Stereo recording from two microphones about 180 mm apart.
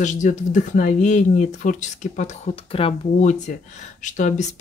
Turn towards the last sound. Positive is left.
turn(degrees=45)  # may be behind; listen again after turning